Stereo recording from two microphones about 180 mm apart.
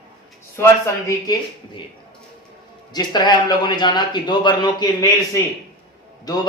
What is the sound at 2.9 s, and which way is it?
Speech, 25° left (ahead or behind).